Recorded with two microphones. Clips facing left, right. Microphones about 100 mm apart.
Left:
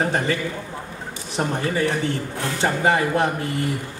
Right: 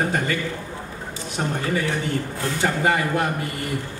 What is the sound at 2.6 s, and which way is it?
Speech, 30° left (ahead or behind).